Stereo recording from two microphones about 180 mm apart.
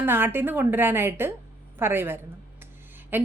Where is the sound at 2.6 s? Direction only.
10° right (ahead or behind).